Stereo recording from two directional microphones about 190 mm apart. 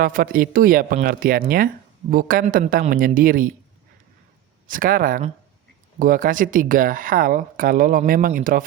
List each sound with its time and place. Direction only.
0.0 s speech: 50° right (ahead or behind)
4.7 s speech: 45° right (ahead or behind)